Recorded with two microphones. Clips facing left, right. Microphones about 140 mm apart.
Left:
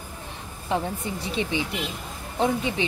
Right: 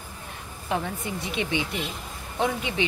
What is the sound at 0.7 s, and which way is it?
A woman's voice, 30° left (ahead or behind).